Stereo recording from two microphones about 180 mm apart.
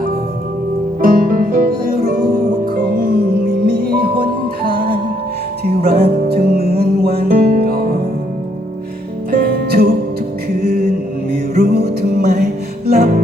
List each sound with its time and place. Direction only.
1.0 s music: 50° right (ahead or behind)
5.6 s music: 60° right (ahead or behind)
9.3 s music: 60° right (ahead or behind)